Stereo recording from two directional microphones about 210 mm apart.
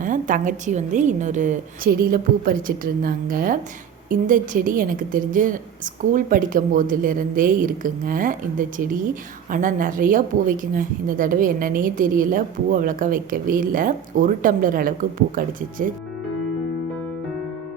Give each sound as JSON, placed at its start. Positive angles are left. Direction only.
{"t": 0.0, "sound": "a woman's voice", "side_deg": -40}